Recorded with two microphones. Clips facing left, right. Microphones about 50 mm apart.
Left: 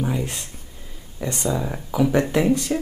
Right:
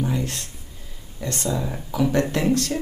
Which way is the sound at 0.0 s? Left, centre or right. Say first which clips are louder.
Even; centre.